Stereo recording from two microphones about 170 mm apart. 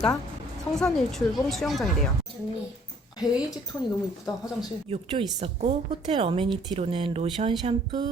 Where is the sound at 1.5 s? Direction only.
Centre (ahead or behind).